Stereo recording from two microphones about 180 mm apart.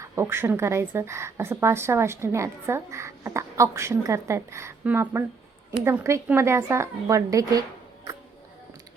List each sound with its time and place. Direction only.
0.0 s a woman's voice: 15° right (ahead or behind)